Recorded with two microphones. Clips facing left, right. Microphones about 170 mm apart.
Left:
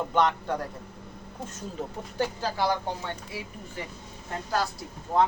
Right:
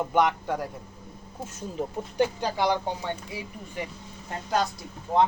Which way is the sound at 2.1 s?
15° right (ahead or behind).